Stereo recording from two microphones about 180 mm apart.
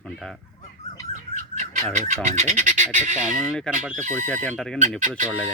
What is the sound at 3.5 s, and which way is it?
Speech, 5° right (ahead or behind).